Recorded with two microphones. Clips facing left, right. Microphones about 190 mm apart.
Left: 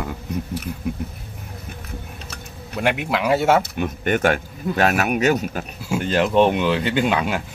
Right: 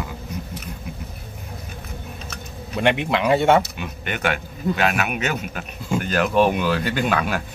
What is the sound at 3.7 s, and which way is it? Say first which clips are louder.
Speech: left 8 dB; 45° left (ahead or behind).